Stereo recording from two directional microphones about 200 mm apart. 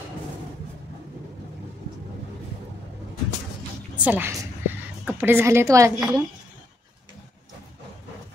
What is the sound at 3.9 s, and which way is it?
A woman's voice, 10° right (ahead or behind).